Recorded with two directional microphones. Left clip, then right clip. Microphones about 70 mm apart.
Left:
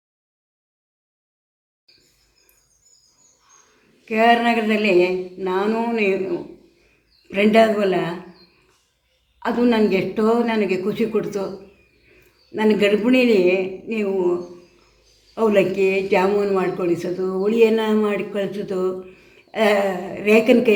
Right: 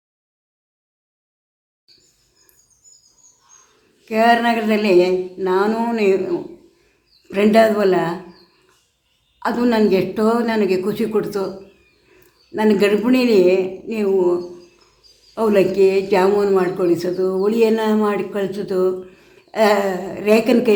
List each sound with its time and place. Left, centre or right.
4.0 s speech: centre; by 6.1 s right
7.3 s speech: right
9.4 s speech: right
12.5 s speech: right